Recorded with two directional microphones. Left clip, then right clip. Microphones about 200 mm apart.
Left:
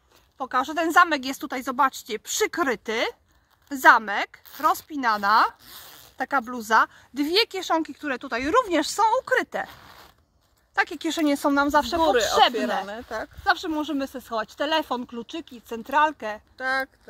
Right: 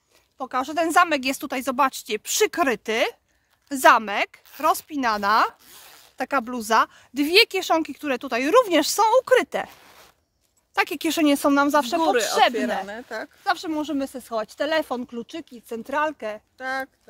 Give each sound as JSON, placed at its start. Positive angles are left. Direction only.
{"t": 0.4, "sound": "speech", "side_deg": -40}
{"t": 5.7, "sound": "speech", "side_deg": -5}
{"t": 6.1, "sound": "speech", "side_deg": -50}
{"t": 10.7, "sound": "speech", "side_deg": -65}
{"t": 12.0, "sound": "speech", "side_deg": -5}
{"t": 13.4, "sound": "speech", "side_deg": -30}
{"t": 16.5, "sound": "speech", "side_deg": 5}